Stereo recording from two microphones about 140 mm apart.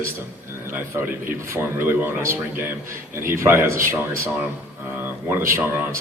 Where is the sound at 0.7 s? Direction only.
15° right (ahead or behind).